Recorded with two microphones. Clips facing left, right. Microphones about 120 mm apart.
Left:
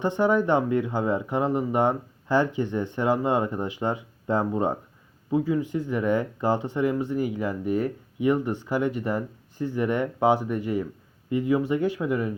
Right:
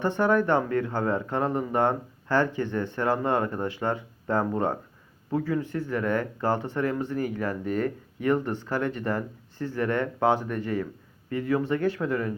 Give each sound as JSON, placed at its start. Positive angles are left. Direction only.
{"t": 0.0, "sound": "speech", "side_deg": 15}